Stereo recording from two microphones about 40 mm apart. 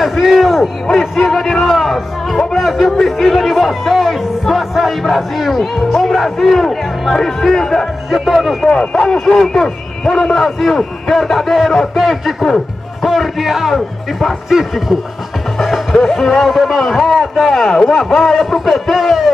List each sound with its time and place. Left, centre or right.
0.0 s a sound: centre
1.3 s a man's voice: centre
1.6 s speech: centre
8.1 s speech: centre
8.6 s a man's voice: left; by 15.0 s centre
15.6 s speech: centre